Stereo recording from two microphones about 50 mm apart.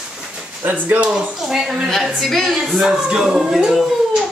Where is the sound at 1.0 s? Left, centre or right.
Right.